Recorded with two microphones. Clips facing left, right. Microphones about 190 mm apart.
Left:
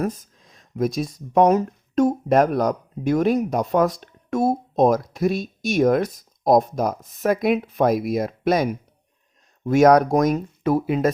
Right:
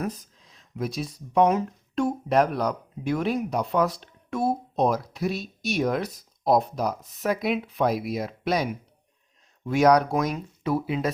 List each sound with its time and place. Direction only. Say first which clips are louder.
0.0 s speech: left 5 dB; 50° left (ahead or behind)